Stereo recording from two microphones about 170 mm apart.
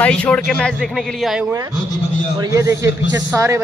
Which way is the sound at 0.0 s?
5° left (ahead or behind).